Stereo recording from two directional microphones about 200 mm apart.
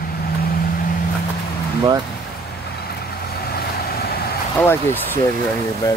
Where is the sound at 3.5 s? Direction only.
50° left (ahead or behind).